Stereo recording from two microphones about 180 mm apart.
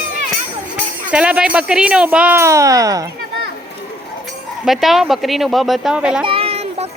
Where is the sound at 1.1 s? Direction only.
5° right (ahead or behind).